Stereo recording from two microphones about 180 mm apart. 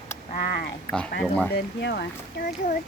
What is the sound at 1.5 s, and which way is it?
Speech, 70° left (ahead or behind).